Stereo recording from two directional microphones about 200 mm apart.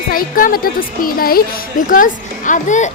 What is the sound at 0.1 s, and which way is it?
Speech, 45° left (ahead or behind).